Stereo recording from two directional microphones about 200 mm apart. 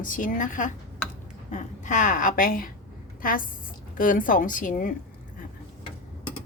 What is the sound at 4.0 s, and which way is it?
Speech, 45° left (ahead or behind).